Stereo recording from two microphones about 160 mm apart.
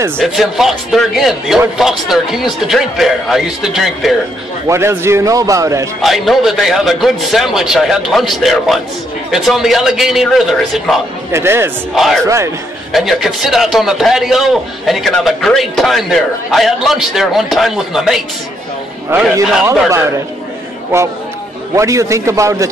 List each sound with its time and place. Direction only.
0.2 s a man's voice: centre (ahead or behind)
4.6 s a man's voice: 15° right (ahead or behind)
6.0 s a man's voice: centre (ahead or behind)
11.3 s a man's voice: 15° right (ahead or behind)
11.9 s a man's voice: centre (ahead or behind)
19.6 s a man's voice: 15° right (ahead or behind)
21.7 s a man's voice: 20° right (ahead or behind)